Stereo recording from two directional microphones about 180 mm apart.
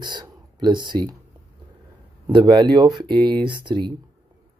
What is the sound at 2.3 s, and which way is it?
Speech, 25° right (ahead or behind).